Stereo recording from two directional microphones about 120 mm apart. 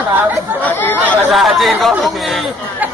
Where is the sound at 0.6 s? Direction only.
15° left (ahead or behind).